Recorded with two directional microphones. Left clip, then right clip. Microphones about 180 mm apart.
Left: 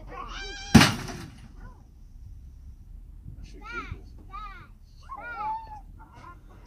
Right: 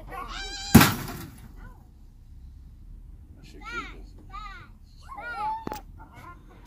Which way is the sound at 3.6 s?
45° right (ahead or behind).